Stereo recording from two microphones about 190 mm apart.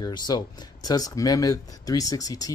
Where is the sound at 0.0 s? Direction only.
20° left (ahead or behind).